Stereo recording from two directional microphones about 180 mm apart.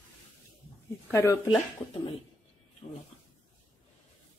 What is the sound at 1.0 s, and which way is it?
Speech, 15° left (ahead or behind).